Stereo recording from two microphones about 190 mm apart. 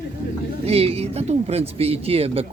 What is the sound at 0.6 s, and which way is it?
Speech, 30° right (ahead or behind).